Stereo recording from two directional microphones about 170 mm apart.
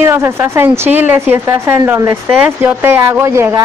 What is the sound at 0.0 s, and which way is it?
Speech, 15° right (ahead or behind).